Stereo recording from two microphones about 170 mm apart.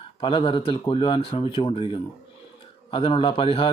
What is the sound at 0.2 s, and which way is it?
Speech, 30° left (ahead or behind).